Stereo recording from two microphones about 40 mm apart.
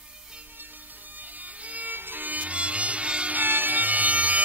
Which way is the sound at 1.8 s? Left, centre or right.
Right.